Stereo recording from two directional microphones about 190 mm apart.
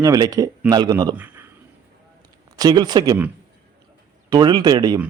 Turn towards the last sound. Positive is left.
turn(degrees=-20)  # may be behind; listen again after turning